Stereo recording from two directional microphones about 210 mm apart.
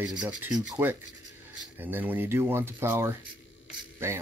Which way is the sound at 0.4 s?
15° right (ahead or behind).